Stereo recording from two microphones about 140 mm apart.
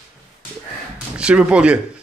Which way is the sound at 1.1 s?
10° right (ahead or behind).